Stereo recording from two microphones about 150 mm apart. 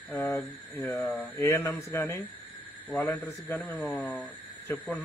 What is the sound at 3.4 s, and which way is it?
Speech, 10° left (ahead or behind).